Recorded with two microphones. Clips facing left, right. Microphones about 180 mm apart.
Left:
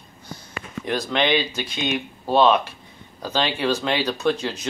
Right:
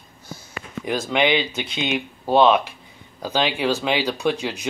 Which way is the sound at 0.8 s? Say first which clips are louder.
Right 1 dB; 5° right (ahead or behind).